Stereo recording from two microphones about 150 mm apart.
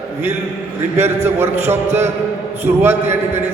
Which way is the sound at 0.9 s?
15° right (ahead or behind).